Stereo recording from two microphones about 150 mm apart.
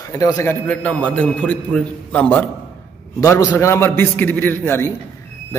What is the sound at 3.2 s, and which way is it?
A man's voice, 20° left (ahead or behind).